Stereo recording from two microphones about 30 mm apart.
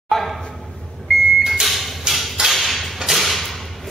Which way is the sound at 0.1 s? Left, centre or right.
Centre.